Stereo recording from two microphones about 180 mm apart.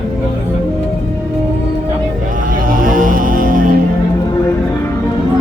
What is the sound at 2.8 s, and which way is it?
Music, 50° right (ahead or behind).